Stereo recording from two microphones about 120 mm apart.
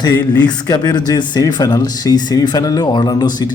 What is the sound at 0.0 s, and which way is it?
Speech, 35° left (ahead or behind).